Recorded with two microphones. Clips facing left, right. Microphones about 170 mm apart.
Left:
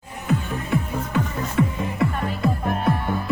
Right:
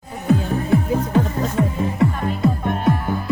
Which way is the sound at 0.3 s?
35° right (ahead or behind).